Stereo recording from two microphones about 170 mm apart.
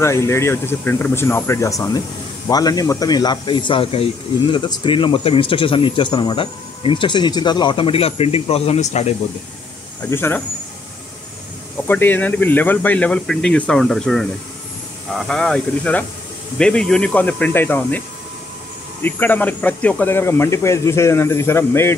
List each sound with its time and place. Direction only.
0.0 s speech: 15° left (ahead or behind); by 9.1 s 40° left (ahead or behind)
10.0 s speech: 15° left (ahead or behind)
11.9 s speech: 10° left (ahead or behind)
19.0 s speech: 10° left (ahead or behind)